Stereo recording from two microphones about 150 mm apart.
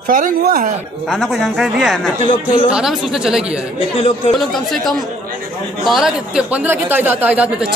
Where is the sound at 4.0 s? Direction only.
45° left (ahead or behind).